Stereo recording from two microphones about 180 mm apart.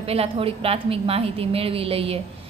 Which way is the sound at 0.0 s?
35° right (ahead or behind).